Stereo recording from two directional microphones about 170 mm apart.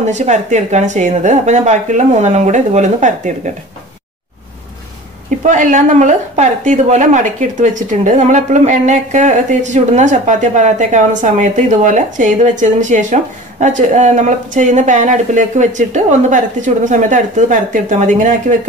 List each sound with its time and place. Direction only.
0.0 s a woman's voice: 45° right (ahead or behind)
5.4 s a woman's voice: 50° right (ahead or behind)